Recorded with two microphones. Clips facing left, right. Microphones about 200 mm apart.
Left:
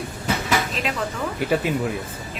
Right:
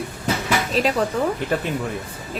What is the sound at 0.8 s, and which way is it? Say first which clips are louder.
Speech: right 7 dB; 35° right (ahead or behind).